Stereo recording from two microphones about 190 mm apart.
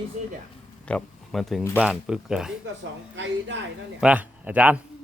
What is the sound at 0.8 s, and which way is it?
Speech, 5° left (ahead or behind).